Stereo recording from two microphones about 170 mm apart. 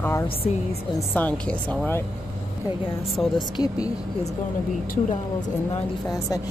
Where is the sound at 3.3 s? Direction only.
25° left (ahead or behind).